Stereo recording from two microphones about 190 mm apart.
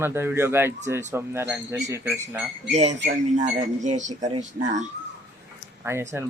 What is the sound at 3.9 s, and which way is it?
Speech, 40° right (ahead or behind).